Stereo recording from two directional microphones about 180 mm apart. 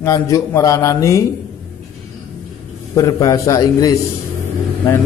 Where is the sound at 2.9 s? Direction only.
20° left (ahead or behind).